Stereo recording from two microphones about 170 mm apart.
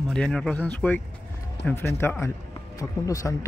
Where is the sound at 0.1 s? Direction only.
5° left (ahead or behind).